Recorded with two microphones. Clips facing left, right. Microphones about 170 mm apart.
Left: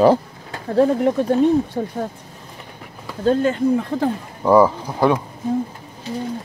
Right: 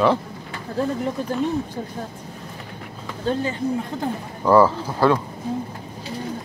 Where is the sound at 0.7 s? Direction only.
65° left (ahead or behind).